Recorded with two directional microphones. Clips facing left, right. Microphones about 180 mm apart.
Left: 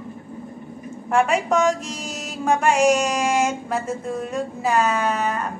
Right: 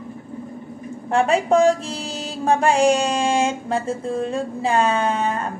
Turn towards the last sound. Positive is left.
turn(degrees=-30)  # may be behind; listen again after turning